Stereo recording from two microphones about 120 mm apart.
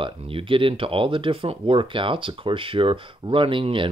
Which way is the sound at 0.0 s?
50° right (ahead or behind).